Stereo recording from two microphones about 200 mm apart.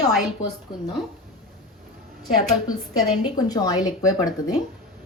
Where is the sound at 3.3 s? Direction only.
20° left (ahead or behind).